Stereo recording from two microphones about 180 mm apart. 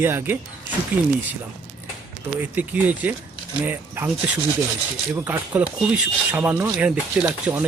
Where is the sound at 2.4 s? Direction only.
10° right (ahead or behind).